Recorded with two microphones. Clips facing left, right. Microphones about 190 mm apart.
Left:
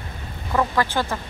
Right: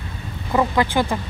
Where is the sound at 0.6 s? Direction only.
15° right (ahead or behind).